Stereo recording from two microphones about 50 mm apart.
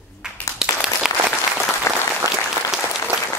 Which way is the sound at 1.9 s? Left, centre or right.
Left.